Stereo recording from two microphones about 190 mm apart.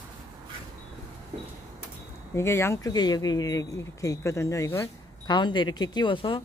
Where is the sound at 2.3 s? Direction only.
15° left (ahead or behind).